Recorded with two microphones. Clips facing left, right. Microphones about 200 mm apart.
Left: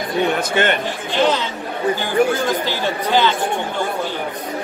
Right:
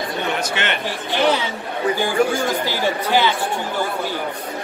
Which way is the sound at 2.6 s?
10° right (ahead or behind).